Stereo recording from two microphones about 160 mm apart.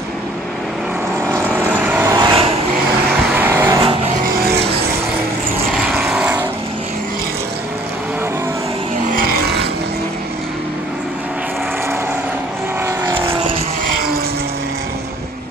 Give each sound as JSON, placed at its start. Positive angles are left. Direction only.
{"t": 1.7, "sound": "vehicle", "side_deg": -10}
{"t": 3.3, "sound": "vehicle", "side_deg": -15}
{"t": 5.7, "sound": "vehicle", "side_deg": 0}
{"t": 12.8, "sound": "vehicle", "side_deg": -15}